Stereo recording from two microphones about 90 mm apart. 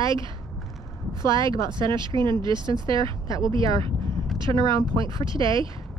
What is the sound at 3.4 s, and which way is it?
Speech, 70° right (ahead or behind).